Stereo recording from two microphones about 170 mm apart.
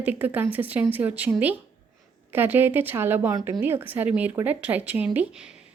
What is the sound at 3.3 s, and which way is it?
Speech, 25° right (ahead or behind).